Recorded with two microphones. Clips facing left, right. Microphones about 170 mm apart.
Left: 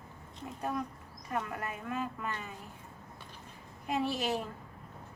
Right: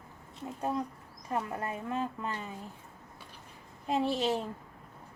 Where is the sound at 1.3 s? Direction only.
30° right (ahead or behind).